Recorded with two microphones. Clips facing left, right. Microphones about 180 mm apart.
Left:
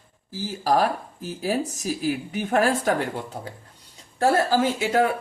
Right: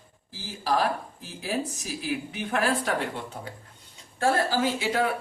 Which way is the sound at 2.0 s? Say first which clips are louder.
Left 3 dB; 45° left (ahead or behind).